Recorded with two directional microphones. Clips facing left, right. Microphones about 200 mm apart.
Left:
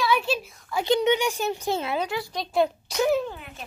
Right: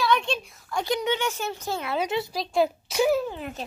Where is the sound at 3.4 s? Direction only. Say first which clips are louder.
Right 7 dB; 40° right (ahead or behind).